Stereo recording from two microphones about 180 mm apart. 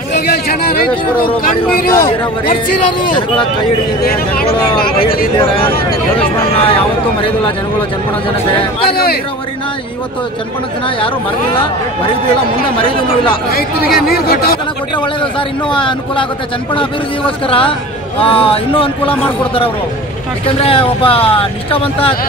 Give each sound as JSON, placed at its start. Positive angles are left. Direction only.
{"t": 0.3, "sound": "speech", "side_deg": 55}
{"t": 4.8, "sound": "a man's voice", "side_deg": 30}
{"t": 8.9, "sound": "speech", "side_deg": 55}
{"t": 12.8, "sound": "a man's voice", "side_deg": 30}
{"t": 13.5, "sound": "speech", "side_deg": 55}
{"t": 15.7, "sound": "a man's voice", "side_deg": 25}
{"t": 17.5, "sound": "a man's voice", "side_deg": 30}